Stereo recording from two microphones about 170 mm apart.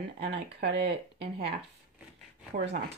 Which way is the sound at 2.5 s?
80° right.